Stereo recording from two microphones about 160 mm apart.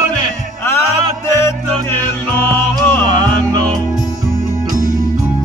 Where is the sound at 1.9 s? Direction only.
10° left (ahead or behind).